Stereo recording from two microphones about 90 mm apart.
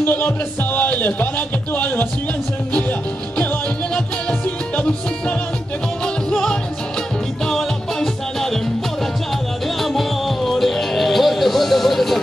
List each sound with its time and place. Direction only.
0.0 s speech: 20° left (ahead or behind)
3.9 s music: 10° left (ahead or behind)
6.3 s music: 10° left (ahead or behind)
9.8 s music: centre (ahead or behind)